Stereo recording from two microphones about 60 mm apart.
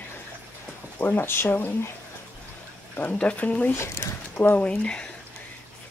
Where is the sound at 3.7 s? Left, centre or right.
Left.